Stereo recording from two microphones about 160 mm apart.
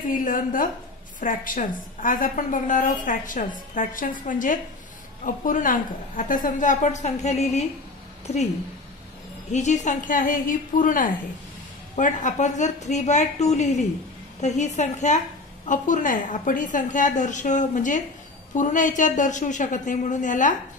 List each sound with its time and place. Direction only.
0.2 s a woman's voice: 55° left (ahead or behind)
9.5 s a woman's voice: 45° left (ahead or behind)